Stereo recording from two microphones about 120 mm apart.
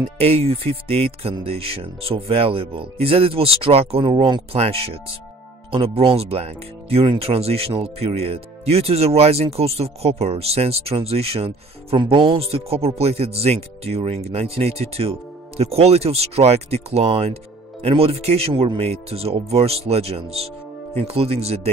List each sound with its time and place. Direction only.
0.2 s speech: 55° right (ahead or behind)
4.0 s speech: 40° right (ahead or behind); by 21.5 s 60° right (ahead or behind)